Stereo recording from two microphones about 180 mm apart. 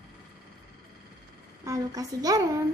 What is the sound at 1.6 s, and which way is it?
Speech, 20° right (ahead or behind).